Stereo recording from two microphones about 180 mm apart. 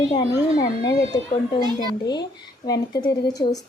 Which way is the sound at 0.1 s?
20° left (ahead or behind).